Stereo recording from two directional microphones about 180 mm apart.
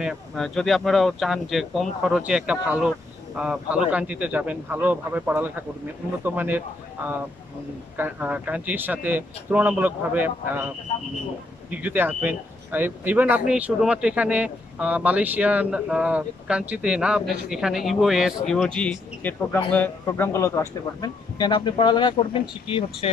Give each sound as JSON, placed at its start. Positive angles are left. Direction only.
{"t": 0.0, "sound": "speech", "side_deg": 0}
{"t": 11.7, "sound": "speech", "side_deg": -10}